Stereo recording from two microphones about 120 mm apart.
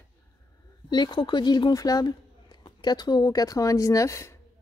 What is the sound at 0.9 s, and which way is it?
Speech, 40° left (ahead or behind).